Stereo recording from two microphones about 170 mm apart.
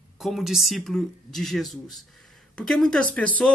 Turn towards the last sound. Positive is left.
turn(degrees=10)  # may be behind; listen again after turning